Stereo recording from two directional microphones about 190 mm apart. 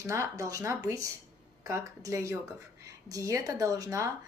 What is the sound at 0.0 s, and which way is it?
A woman's voice, 15° right (ahead or behind).